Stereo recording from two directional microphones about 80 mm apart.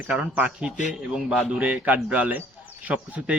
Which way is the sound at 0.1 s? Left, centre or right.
Centre.